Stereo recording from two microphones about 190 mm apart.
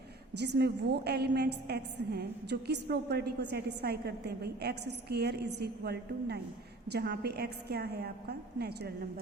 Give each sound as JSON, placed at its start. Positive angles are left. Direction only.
{"t": 0.3, "sound": "a woman's voice", "side_deg": -60}